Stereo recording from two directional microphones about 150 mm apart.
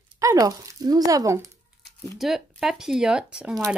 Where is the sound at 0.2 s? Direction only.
20° right (ahead or behind).